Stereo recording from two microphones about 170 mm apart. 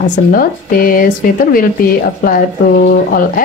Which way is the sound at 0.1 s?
60° left (ahead or behind).